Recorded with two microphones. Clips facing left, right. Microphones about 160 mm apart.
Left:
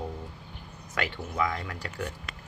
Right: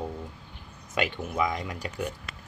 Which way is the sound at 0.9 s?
15° right (ahead or behind).